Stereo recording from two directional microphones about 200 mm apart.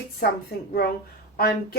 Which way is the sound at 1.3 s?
50° left (ahead or behind).